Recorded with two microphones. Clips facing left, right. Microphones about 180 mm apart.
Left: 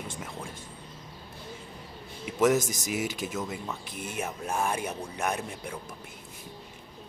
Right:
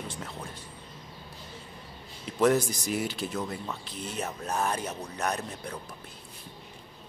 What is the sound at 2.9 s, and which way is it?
Speech, 5° left (ahead or behind).